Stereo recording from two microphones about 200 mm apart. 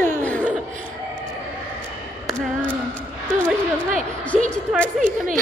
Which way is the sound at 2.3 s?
5° left (ahead or behind).